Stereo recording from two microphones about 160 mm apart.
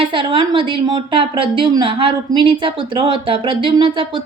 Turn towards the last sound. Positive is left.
turn(degrees=-30)  # may be behind; listen again after turning